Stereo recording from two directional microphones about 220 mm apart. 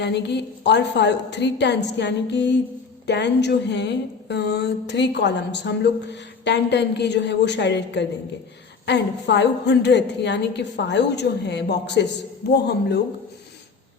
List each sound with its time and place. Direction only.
0.0 s a woman's voice: 50° left (ahead or behind)